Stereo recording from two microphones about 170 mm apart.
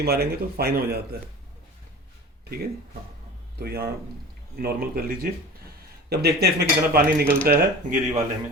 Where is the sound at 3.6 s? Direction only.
65° right (ahead or behind).